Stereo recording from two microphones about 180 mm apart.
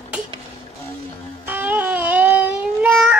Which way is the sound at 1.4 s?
10° right (ahead or behind).